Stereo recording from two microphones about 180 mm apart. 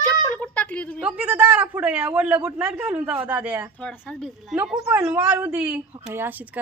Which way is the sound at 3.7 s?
10° left (ahead or behind).